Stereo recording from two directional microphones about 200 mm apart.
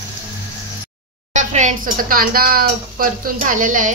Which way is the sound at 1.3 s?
35° right (ahead or behind).